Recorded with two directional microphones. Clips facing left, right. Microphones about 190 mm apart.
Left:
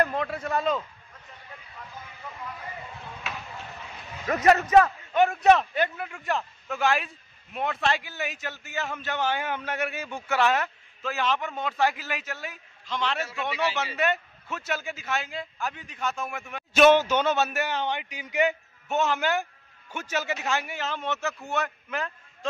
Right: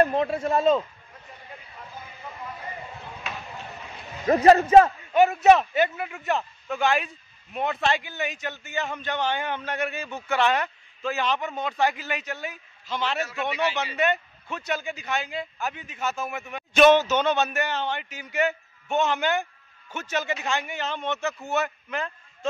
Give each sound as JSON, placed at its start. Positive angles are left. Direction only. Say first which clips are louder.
{"t": 0.0, "sound": "a man's voice", "louder": "right 5 dB", "side_deg": -25}
{"t": 3.3, "sound": "a sound", "louder": "right 1 dB", "side_deg": 5}
{"t": 4.3, "sound": "a man's voice", "louder": "right 4 dB", "side_deg": -30}
{"t": 5.1, "sound": "a man's voice", "louder": "right 2 dB", "side_deg": -5}
{"t": 18.9, "sound": "a man's voice", "louder": "right 1 dB", "side_deg": 0}